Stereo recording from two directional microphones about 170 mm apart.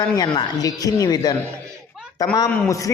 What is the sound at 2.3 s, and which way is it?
Speech, 20° left (ahead or behind).